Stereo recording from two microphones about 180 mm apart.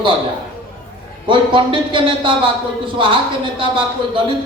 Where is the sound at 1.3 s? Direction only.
25° right (ahead or behind).